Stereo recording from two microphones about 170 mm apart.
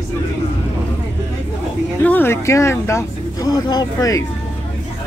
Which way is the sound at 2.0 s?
10° left (ahead or behind).